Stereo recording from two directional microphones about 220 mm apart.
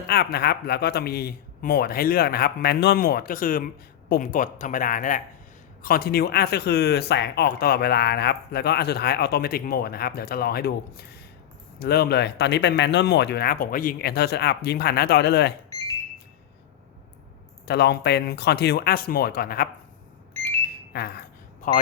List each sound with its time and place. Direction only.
0.1 s speech: 45° left (ahead or behind)
17.7 s speech: 45° left (ahead or behind)
20.9 s speech: 45° left (ahead or behind)
21.6 s speech: 35° left (ahead or behind)